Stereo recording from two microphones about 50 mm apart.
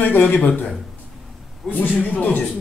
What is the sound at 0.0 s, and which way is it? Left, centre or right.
Speech, left.